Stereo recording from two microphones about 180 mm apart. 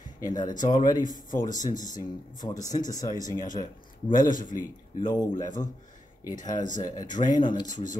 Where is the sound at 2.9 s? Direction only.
20° left (ahead or behind).